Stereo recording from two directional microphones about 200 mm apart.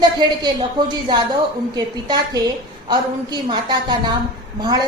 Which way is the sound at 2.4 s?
20° right (ahead or behind).